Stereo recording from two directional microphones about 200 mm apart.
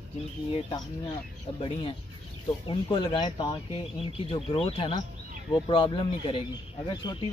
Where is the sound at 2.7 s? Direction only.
25° left (ahead or behind).